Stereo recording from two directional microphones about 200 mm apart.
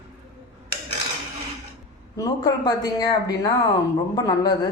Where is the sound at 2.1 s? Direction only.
20° left (ahead or behind).